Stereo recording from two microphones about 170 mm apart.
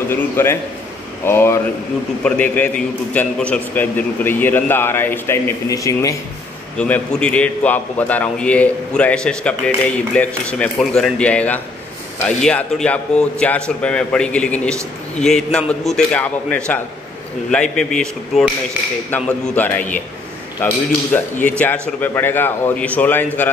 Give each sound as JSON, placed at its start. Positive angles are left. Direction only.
{"t": 0.1, "sound": "a man's voice", "side_deg": 15}
{"t": 6.8, "sound": "a man's voice", "side_deg": 5}